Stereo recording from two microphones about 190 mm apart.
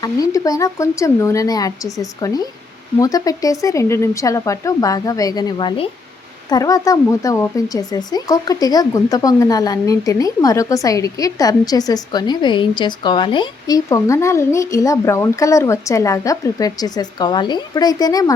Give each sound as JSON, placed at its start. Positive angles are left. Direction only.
{"t": 0.0, "sound": "speech", "side_deg": 20}